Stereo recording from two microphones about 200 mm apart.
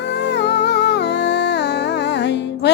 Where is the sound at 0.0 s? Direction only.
60° left (ahead or behind).